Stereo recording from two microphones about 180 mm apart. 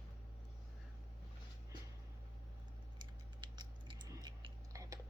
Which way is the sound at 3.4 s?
25° right (ahead or behind).